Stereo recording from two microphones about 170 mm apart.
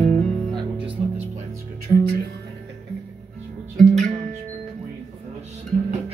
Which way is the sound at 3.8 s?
Centre (ahead or behind).